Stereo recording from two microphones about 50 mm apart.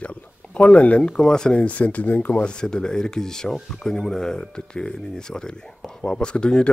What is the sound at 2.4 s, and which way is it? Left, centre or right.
Speech, centre.